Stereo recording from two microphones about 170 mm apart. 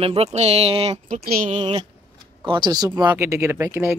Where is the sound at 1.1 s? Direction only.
50° right (ahead or behind).